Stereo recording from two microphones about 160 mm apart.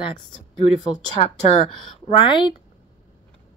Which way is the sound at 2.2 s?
30° left (ahead or behind).